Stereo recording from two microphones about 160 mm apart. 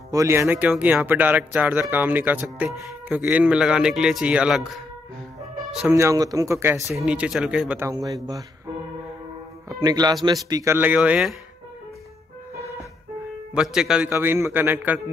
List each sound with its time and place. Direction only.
0.1 s speech: 20° right (ahead or behind)
5.9 s speech: 20° right (ahead or behind)
6.9 s speech: 5° right (ahead or behind)
7.9 s speech: 25° right (ahead or behind)
9.7 s speech: 25° right (ahead or behind); by 11.3 s 5° right (ahead or behind)
13.6 s speech: 5° right (ahead or behind)
14.1 s speech: 15° right (ahead or behind)